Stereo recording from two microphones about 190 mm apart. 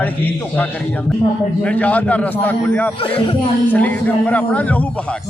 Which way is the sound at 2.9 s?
30° left (ahead or behind).